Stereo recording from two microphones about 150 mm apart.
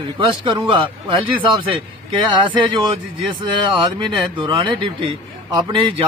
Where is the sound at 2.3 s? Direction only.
30° right (ahead or behind).